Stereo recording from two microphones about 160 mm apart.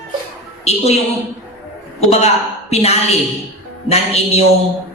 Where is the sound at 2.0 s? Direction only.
40° left (ahead or behind).